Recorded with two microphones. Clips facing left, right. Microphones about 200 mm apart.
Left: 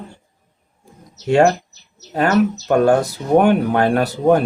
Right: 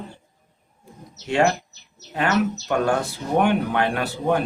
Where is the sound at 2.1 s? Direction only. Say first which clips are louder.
Left 6 dB; 40° left (ahead or behind).